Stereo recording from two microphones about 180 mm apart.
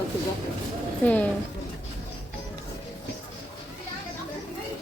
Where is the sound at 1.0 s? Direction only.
10° left (ahead or behind).